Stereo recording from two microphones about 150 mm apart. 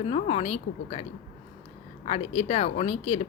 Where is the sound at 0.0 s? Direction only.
40° left (ahead or behind).